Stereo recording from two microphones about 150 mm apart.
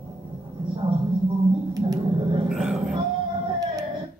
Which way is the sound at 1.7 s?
25° right (ahead or behind).